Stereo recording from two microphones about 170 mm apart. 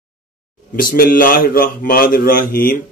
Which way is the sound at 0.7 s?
60° left (ahead or behind).